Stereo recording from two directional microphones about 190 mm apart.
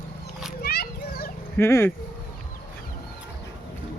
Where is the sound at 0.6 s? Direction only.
55° left (ahead or behind).